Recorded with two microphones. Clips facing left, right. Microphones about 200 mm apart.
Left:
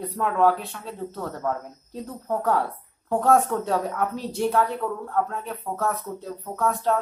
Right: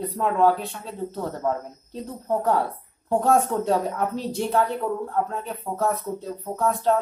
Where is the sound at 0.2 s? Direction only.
30° right (ahead or behind).